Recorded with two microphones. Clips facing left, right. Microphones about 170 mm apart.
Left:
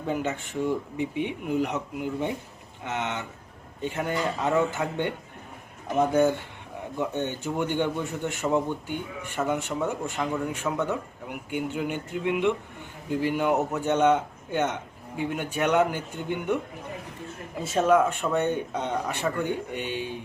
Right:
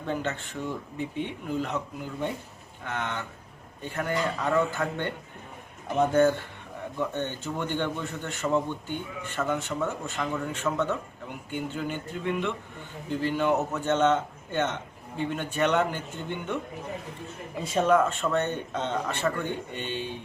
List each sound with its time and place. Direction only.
0.0 s a man's voice: 10° left (ahead or behind)